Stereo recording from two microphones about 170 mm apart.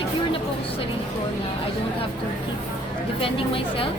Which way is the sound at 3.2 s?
30° left (ahead or behind).